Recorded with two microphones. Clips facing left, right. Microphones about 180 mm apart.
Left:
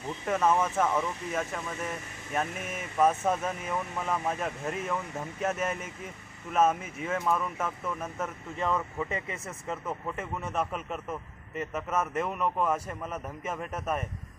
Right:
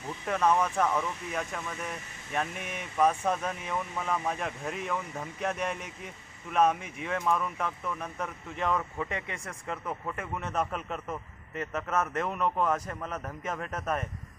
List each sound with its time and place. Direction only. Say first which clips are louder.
0.3 s speech: even; 5° left (ahead or behind)